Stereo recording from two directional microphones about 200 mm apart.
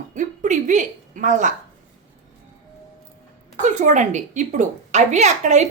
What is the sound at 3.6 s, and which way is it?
A woman's voice, 35° right (ahead or behind).